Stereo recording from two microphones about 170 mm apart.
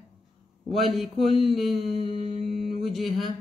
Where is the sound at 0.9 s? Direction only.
Centre (ahead or behind).